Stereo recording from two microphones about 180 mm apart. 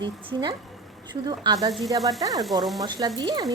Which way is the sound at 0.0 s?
25° right (ahead or behind).